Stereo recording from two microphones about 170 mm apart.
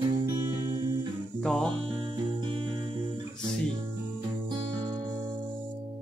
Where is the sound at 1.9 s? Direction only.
30° right (ahead or behind).